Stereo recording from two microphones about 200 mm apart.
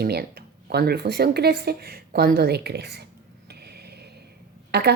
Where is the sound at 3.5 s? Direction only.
55° right (ahead or behind).